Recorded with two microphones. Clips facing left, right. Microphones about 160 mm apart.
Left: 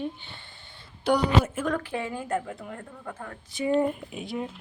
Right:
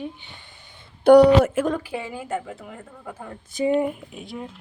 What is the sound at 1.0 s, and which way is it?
Speech, 65° right (ahead or behind).